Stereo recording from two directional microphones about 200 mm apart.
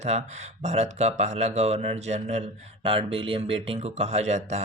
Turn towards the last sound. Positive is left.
turn(degrees=-35)  # may be behind; listen again after turning